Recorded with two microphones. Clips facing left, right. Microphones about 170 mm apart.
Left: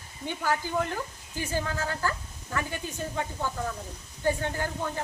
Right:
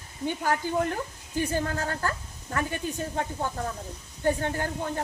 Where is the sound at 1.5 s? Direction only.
50° right (ahead or behind).